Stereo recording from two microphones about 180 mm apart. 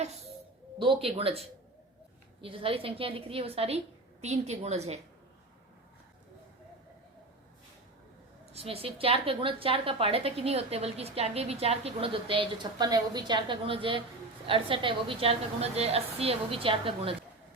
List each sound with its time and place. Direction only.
0.8 s a woman's voice: 30° right (ahead or behind)
2.4 s a woman's voice: 30° right (ahead or behind)
8.5 s a woman's voice: 30° right (ahead or behind)